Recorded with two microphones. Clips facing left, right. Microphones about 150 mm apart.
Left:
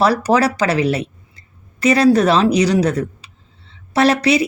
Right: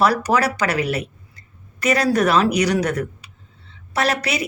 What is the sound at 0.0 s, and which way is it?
A woman's voice, 30° left (ahead or behind).